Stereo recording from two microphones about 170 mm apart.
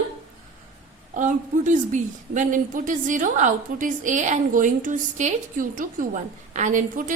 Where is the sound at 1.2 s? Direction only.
50° right (ahead or behind).